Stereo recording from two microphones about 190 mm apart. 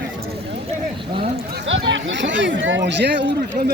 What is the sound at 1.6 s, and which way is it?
Speech, 80° right.